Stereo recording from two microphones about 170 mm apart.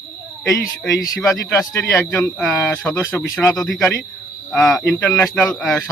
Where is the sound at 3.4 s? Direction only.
Centre (ahead or behind).